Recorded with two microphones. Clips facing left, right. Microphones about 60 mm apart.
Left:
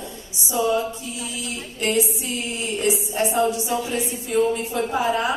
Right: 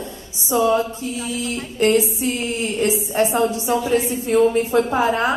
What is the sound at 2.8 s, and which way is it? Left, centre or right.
Speech, right.